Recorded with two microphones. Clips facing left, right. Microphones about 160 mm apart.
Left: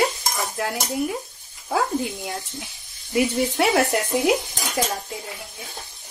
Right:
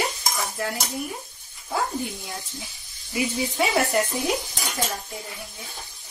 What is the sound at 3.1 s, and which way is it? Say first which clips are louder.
Speech: left 5 dB; 60° left (ahead or behind).